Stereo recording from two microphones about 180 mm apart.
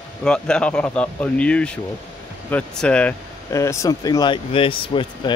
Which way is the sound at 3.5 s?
15° left (ahead or behind).